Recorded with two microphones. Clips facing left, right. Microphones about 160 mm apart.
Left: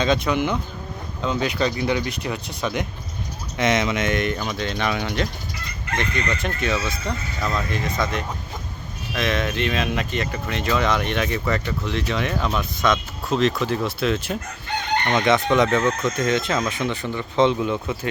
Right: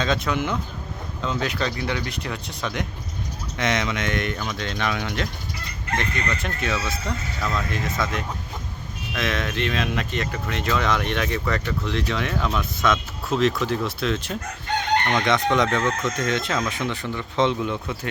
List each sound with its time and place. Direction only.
0.3 s speech: 10° left (ahead or behind)
1.7 s speech: 15° left (ahead or behind)